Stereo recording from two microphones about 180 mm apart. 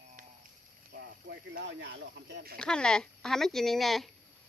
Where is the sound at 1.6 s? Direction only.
80° right.